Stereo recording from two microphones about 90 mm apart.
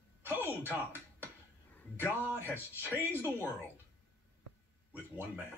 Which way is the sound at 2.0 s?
20° right (ahead or behind).